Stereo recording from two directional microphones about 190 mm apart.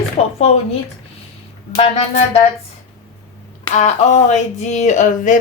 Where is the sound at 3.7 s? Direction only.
35° left (ahead or behind).